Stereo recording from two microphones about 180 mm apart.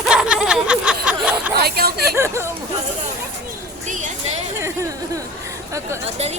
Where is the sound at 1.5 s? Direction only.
60° right (ahead or behind).